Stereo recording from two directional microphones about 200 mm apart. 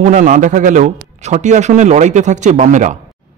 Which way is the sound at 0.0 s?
40° right (ahead or behind).